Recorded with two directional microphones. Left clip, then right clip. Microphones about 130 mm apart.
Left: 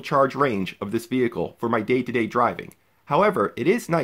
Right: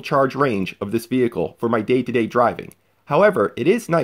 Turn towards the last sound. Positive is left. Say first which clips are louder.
# right 3 dB
turn(degrees=-10)  # may be behind; listen again after turning